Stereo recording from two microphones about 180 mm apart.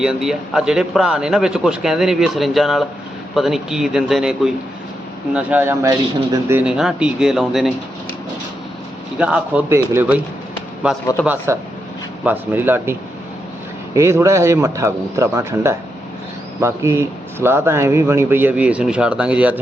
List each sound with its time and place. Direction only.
0.0 s a man's voice: 5° right (ahead or behind)
9.1 s speech: 5° right (ahead or behind)